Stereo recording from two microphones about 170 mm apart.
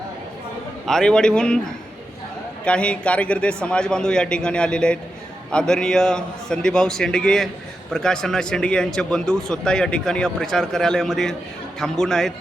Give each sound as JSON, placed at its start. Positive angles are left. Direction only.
{"t": 0.9, "sound": "speech", "side_deg": 5}
{"t": 2.6, "sound": "speech", "side_deg": 5}